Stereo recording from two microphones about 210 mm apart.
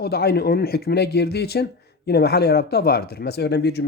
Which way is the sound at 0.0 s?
50° left (ahead or behind).